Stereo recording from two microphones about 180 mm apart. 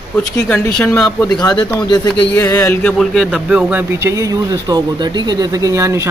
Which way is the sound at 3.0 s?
Centre (ahead or behind).